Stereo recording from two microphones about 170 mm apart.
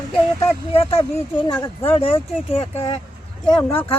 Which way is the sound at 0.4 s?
35° left (ahead or behind).